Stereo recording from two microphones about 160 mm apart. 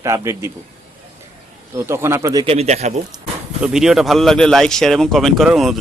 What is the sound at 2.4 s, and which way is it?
Speech, 40° right (ahead or behind).